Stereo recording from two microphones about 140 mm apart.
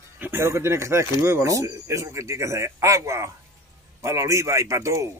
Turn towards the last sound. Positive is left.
turn(degrees=-20)  # may be behind; listen again after turning